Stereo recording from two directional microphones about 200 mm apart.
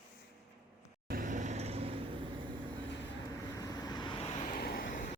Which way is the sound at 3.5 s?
20° left (ahead or behind).